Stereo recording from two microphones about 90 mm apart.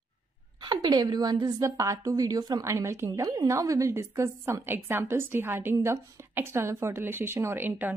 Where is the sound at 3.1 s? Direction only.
45° right (ahead or behind).